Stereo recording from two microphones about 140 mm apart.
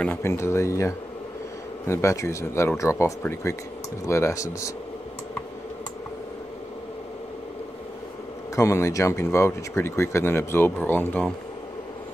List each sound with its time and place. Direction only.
0.0 s speech: 15° left (ahead or behind)
8.5 s speech: 20° left (ahead or behind)